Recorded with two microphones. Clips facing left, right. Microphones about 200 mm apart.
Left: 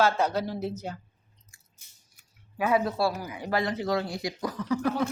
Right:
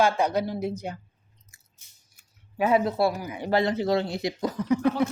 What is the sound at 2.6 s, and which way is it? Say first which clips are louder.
Speech: right 3 dB; 25° right (ahead or behind).